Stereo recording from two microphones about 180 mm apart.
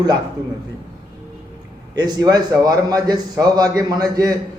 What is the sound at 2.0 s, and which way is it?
A man's voice, 20° right (ahead or behind).